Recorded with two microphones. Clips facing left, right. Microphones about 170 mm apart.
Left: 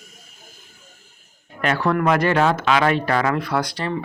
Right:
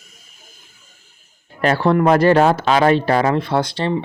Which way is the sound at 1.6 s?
30° right (ahead or behind).